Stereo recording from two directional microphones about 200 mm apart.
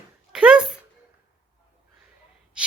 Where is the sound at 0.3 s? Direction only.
5° right (ahead or behind).